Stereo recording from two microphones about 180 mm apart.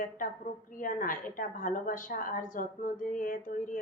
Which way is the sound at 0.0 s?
50° left (ahead or behind).